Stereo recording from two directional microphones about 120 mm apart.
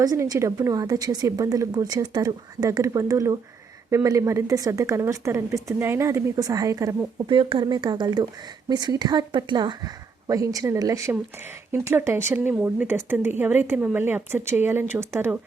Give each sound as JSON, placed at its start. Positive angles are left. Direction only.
{"t": 0.0, "sound": "a woman's voice", "side_deg": -30}
{"t": 7.2, "sound": "a woman's voice", "side_deg": -45}